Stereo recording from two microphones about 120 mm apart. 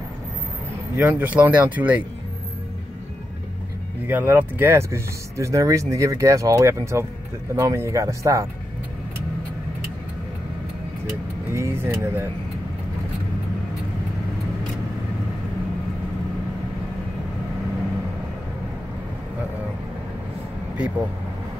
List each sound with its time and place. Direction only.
0.9 s speech: 15° right (ahead or behind)
4.1 s speech: 15° right (ahead or behind)
11.5 s speech: 20° right (ahead or behind)